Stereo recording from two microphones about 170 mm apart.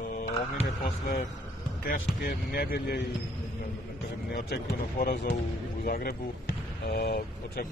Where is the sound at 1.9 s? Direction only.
60° left (ahead or behind).